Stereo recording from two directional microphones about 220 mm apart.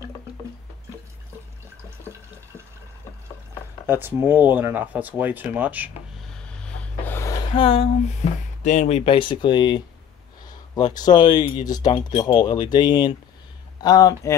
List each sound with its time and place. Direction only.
3.8 s speech: 10° right (ahead or behind)
6.6 s snort: 10° left (ahead or behind)
7.5 s speech: 25° left (ahead or behind)
10.9 s speech: 20° left (ahead or behind)